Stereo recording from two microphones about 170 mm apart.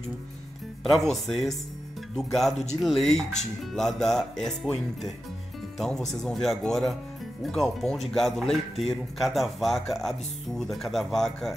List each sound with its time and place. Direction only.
0.8 s speech: centre (ahead or behind)